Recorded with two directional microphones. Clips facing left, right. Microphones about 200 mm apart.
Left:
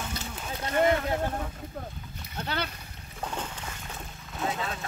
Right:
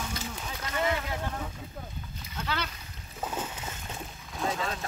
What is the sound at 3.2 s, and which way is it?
Boat, 5° right (ahead or behind).